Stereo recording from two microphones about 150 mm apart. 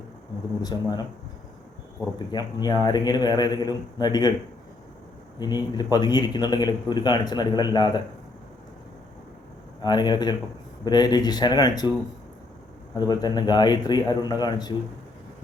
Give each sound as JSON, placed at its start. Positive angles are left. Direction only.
{"t": 0.6, "sound": "speech", "side_deg": 25}
{"t": 2.1, "sound": "speech", "side_deg": 30}
{"t": 5.4, "sound": "speech", "side_deg": 25}
{"t": 9.8, "sound": "speech", "side_deg": 30}
{"t": 13.0, "sound": "speech", "side_deg": 30}